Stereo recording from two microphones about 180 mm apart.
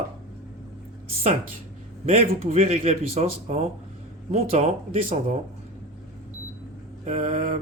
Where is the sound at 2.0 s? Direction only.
35° right (ahead or behind).